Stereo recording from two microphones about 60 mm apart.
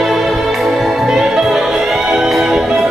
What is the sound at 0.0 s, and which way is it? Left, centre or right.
Music, centre.